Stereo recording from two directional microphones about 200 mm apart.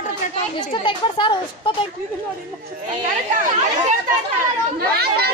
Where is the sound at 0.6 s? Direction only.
25° left (ahead or behind).